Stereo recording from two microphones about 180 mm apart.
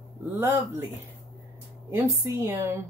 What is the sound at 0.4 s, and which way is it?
Speech, 15° right (ahead or behind).